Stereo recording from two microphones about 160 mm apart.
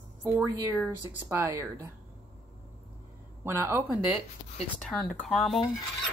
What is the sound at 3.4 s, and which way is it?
Speech, 15° right (ahead or behind).